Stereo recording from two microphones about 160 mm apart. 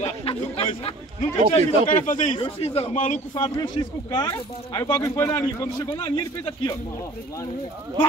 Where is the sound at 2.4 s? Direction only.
40° left (ahead or behind).